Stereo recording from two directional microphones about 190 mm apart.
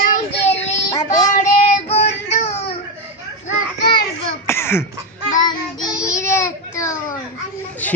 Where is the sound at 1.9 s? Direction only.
35° left (ahead or behind).